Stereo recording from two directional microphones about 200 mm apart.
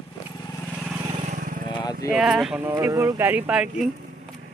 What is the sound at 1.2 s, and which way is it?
Vehicle, 40° right (ahead or behind).